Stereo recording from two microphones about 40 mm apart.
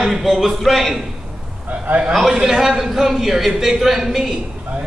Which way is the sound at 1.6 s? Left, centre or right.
Right.